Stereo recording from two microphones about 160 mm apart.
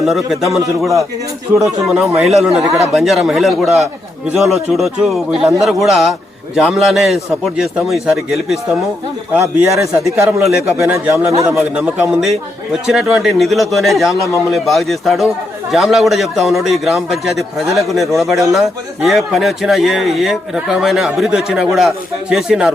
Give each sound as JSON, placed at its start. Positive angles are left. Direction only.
{"t": 0.0, "sound": "speech", "side_deg": 0}
{"t": 9.3, "sound": "speech", "side_deg": -15}